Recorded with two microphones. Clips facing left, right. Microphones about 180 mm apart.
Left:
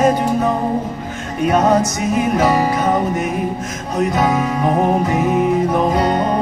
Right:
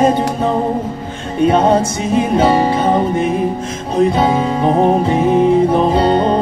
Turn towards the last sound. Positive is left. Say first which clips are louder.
# right 4 dB
turn(degrees=-30)  # may be behind; listen again after turning